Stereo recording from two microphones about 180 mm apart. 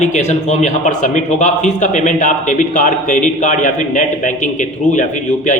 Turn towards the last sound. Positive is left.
turn(degrees=45)  # may be behind; listen again after turning